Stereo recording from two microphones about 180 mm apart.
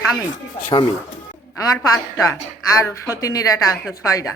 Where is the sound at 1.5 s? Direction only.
20° left (ahead or behind).